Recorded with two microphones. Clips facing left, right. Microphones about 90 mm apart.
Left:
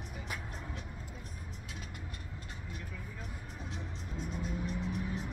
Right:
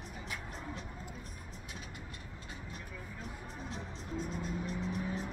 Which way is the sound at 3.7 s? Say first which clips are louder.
Right 3 dB; 35° right (ahead or behind).